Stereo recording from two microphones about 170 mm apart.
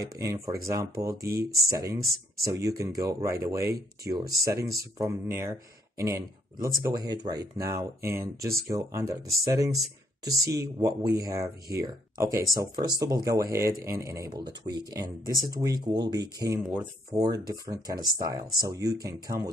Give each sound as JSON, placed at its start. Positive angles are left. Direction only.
{"t": 0.0, "sound": "speech", "side_deg": -20}
{"t": 10.4, "sound": "speech", "side_deg": -20}